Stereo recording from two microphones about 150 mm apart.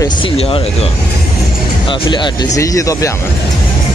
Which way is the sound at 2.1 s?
25° left (ahead or behind).